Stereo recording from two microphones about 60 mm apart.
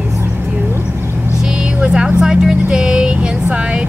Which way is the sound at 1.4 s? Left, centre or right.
Centre.